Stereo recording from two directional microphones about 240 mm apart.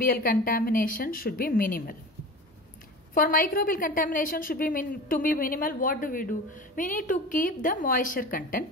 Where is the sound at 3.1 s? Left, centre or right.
Left.